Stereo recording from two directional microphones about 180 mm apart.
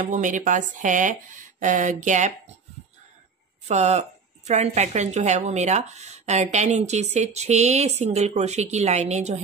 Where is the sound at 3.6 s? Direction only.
40° right (ahead or behind).